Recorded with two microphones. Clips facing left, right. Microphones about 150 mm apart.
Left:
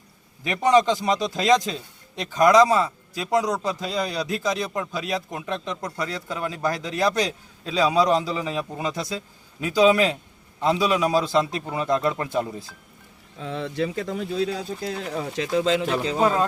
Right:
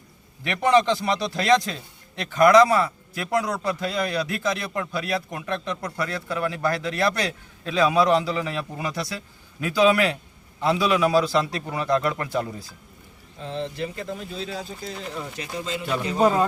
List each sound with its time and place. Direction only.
0.4 s a man's voice: 15° left (ahead or behind)
13.4 s speech: 70° left (ahead or behind); by 14.3 s 85° left
14.8 s speech: 70° left (ahead or behind); by 15.9 s 90° left